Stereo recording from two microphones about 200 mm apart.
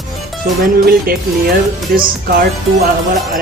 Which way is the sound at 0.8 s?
50° right (ahead or behind).